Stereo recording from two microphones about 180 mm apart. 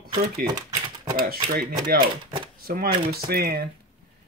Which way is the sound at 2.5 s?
55° right (ahead or behind).